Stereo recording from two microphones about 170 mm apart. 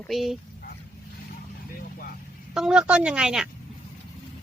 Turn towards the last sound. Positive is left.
turn(degrees=-5)  # may be behind; listen again after turning